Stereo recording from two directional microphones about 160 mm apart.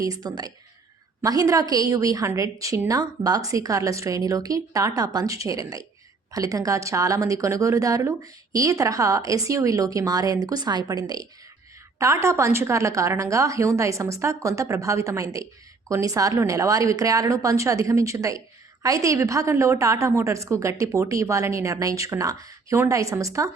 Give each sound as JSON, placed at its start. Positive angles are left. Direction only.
{"t": 0.0, "sound": "a woman's voice", "side_deg": -25}